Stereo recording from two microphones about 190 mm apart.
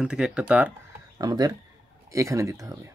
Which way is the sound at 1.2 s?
20° right (ahead or behind).